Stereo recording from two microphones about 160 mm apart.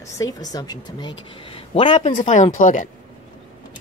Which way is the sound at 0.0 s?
20° left (ahead or behind).